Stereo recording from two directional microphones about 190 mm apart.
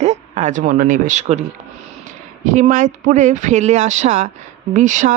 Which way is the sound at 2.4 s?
45° right (ahead or behind).